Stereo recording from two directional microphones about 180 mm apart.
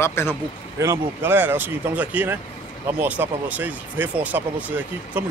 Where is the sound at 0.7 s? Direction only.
15° right (ahead or behind).